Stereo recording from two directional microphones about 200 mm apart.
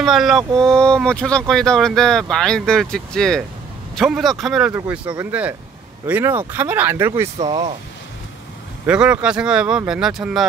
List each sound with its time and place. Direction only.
0.0 s speech: centre (ahead or behind)
7.3 s speech: 25° right (ahead or behind)
8.8 s speech: 5° right (ahead or behind)